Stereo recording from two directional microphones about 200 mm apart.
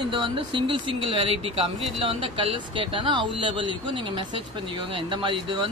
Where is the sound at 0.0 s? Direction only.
25° right (ahead or behind).